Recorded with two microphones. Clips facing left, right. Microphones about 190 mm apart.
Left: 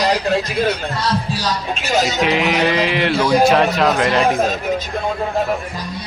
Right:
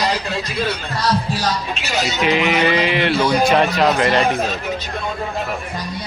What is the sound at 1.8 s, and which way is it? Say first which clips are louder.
Speech: left 4 dB; 45° left (ahead or behind).